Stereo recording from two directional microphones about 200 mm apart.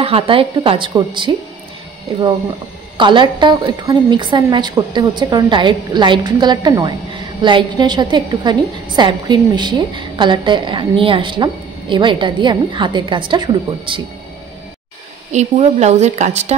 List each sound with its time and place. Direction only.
0.0 s a woman's voice: 30° right (ahead or behind)
3.0 s a woman's voice: 25° right (ahead or behind)
15.3 s speech: 30° right (ahead or behind)